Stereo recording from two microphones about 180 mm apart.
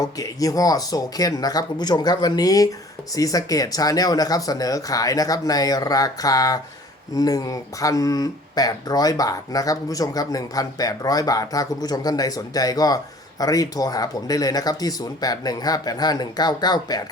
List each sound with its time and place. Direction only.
0.0 s speech: 20° left (ahead or behind)